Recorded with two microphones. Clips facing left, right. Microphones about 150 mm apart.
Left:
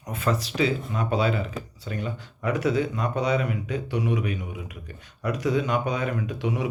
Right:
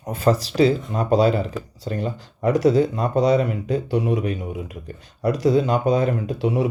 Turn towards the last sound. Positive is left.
turn(degrees=-30)  # may be behind; listen again after turning